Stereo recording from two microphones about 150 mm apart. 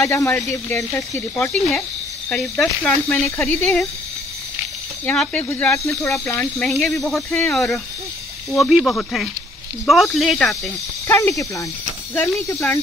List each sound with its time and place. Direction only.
0.0 s speech: 20° left (ahead or behind)
2.2 s speech: 5° left (ahead or behind)
3.2 s speech: 15° left (ahead or behind)
5.0 s speech: 10° left (ahead or behind)
6.7 s speech: centre (ahead or behind)
11.1 s speech: 15° left (ahead or behind)